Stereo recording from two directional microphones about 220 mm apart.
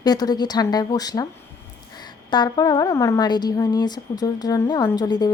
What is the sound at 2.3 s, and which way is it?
Speech, 20° left (ahead or behind).